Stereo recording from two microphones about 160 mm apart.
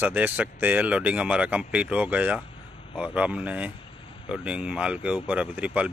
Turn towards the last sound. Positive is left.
turn(degrees=-10)  # may be behind; listen again after turning